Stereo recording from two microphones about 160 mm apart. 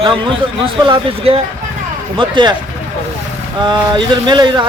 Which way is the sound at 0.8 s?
35° right (ahead or behind).